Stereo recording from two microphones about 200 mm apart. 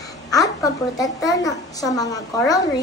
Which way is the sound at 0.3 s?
15° left (ahead or behind).